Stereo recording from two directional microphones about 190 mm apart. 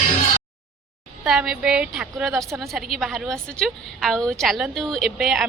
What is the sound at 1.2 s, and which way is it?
A woman's voice, centre (ahead or behind).